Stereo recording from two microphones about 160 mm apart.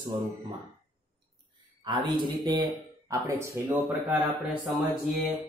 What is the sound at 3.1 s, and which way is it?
Speech, 20° right (ahead or behind).